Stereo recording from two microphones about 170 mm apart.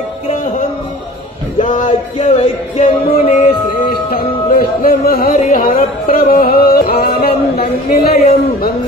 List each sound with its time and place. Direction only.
1.6 s music: 50° left (ahead or behind)
3.1 s music: 55° left (ahead or behind)